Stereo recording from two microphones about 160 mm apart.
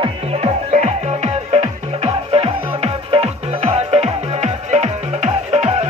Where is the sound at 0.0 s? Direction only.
40° right (ahead or behind).